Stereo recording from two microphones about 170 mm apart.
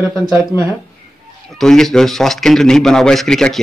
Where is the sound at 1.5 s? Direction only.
Centre (ahead or behind).